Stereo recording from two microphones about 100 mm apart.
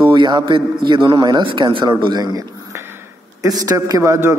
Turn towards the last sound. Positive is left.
turn(degrees=-35)  # may be behind; listen again after turning